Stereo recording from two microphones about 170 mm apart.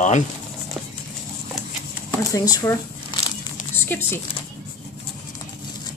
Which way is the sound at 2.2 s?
20° left (ahead or behind).